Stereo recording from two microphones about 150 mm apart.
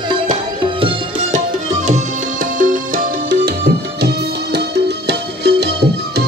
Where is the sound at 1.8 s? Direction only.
60° right (ahead or behind); by 6.2 s 90° right.